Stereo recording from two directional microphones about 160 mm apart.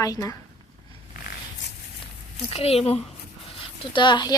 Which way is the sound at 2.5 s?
40° left (ahead or behind).